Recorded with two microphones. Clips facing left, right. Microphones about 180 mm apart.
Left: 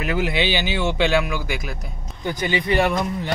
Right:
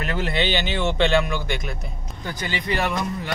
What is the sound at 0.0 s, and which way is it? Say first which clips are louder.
Speech: left 2 dB; 10° left (ahead or behind).